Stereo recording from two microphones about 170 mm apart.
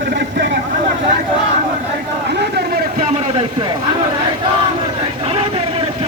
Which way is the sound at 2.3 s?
75° right (ahead or behind).